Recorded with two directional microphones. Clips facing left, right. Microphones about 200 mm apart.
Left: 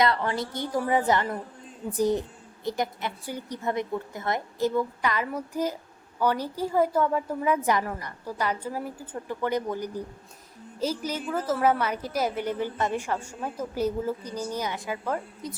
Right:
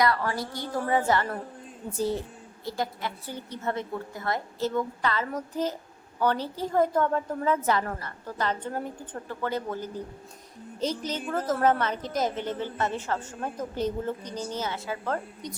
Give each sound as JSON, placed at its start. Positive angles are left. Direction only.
{"t": 0.0, "sound": "a woman's voice", "side_deg": 20}